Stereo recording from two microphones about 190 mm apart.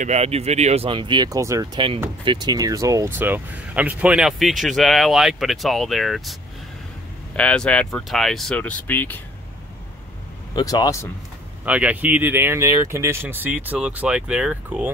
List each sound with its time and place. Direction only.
0.0 s speech: 35° right (ahead or behind); by 6.3 s centre (ahead or behind)
7.3 s speech: 5° left (ahead or behind)
10.5 s speech: 20° left (ahead or behind)
11.6 s speech: 5° right (ahead or behind)